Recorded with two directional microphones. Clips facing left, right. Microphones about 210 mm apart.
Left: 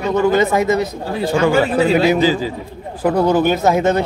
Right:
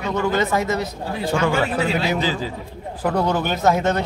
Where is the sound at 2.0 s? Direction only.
5° left (ahead or behind).